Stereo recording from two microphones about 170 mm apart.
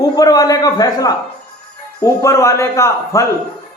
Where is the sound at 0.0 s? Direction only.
20° left (ahead or behind).